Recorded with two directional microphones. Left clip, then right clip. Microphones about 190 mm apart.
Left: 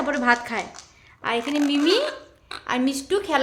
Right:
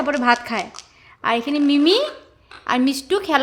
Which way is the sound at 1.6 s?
35° right (ahead or behind).